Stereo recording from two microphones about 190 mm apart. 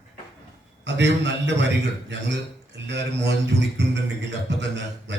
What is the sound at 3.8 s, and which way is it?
Music, 70° right (ahead or behind).